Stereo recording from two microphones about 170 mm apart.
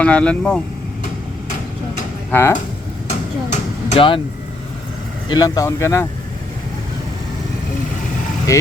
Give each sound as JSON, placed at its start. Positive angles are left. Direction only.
{"t": 0.0, "sound": "speech", "side_deg": 5}
{"t": 2.3, "sound": "speech", "side_deg": 15}
{"t": 3.5, "sound": "vehicle", "side_deg": 30}
{"t": 5.3, "sound": "speech", "side_deg": 20}
{"t": 8.5, "sound": "speech", "side_deg": 20}